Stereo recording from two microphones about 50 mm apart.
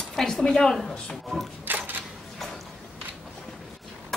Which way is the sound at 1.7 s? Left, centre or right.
Right.